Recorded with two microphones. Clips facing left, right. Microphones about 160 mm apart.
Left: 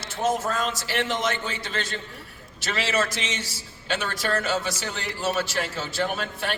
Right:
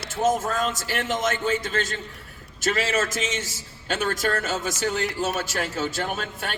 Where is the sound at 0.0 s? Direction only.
45° right (ahead or behind).